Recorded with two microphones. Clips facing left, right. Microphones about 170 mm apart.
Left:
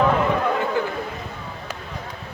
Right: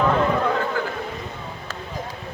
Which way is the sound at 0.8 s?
20° left (ahead or behind).